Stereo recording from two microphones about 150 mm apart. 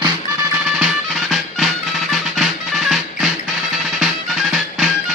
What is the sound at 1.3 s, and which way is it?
Music, centre (ahead or behind).